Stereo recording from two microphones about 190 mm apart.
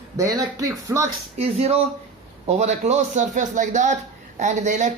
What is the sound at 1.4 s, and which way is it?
Speech, 35° right (ahead or behind).